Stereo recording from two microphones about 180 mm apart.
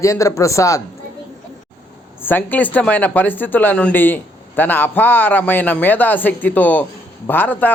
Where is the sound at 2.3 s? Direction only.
10° left (ahead or behind).